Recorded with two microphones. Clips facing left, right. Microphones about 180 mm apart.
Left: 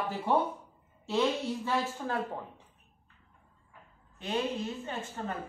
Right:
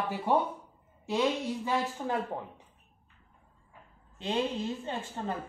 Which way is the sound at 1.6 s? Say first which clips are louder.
Right 2 dB; 20° right (ahead or behind).